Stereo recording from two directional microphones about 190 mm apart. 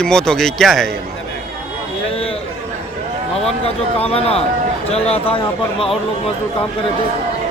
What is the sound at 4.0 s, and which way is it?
Speech, 30° left (ahead or behind).